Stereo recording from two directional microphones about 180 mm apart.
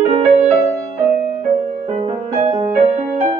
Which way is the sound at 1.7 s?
40° right (ahead or behind).